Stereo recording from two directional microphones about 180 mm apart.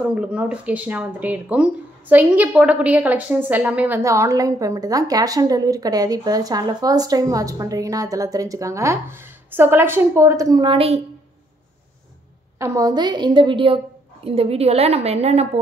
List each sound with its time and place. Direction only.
0.0 s speech: 5° right (ahead or behind); by 11.0 s 30° right (ahead or behind)
12.5 s a woman's voice: 15° right (ahead or behind); by 15.6 s 35° right (ahead or behind)